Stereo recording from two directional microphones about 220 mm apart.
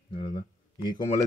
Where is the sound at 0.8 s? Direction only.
20° left (ahead or behind).